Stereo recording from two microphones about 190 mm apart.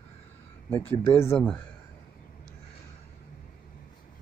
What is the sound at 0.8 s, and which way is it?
Speech, 30° left (ahead or behind).